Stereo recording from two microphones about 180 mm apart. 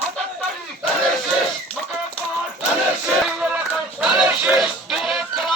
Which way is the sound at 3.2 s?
5° right (ahead or behind).